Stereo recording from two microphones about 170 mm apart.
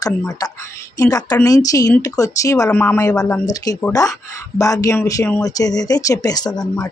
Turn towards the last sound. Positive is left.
turn(degrees=25)  # may be behind; listen again after turning